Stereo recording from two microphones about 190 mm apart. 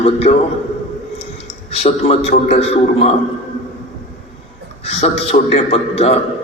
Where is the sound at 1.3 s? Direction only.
35° left (ahead or behind).